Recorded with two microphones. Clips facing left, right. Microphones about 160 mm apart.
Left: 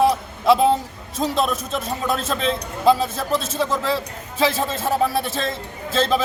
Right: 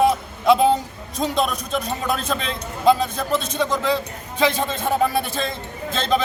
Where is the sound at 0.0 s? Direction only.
Centre (ahead or behind).